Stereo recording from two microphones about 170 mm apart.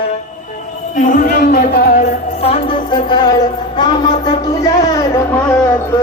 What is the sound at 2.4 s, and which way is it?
Music, 35° left (ahead or behind).